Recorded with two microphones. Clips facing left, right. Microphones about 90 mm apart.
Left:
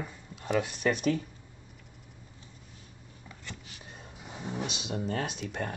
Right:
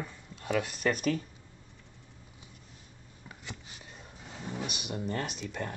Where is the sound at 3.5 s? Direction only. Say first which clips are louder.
Even; 20° right (ahead or behind).